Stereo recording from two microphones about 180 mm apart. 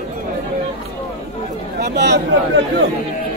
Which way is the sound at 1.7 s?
70° right (ahead or behind).